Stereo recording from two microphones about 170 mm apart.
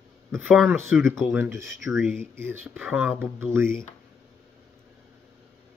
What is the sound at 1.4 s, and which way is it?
Speech, 15° right (ahead or behind).